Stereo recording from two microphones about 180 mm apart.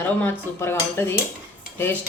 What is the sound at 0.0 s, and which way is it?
Speech, 10° left (ahead or behind).